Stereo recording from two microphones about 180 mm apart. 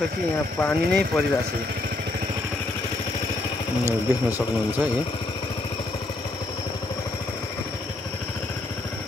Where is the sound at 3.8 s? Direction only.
10° right (ahead or behind).